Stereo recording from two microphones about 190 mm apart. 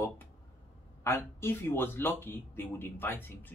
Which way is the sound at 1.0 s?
10° left (ahead or behind).